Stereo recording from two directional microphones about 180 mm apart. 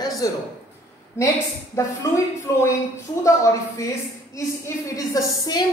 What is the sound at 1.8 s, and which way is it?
A woman's voice, 15° left (ahead or behind).